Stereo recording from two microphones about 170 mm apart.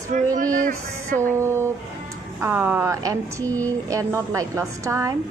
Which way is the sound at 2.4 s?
15° right (ahead or behind).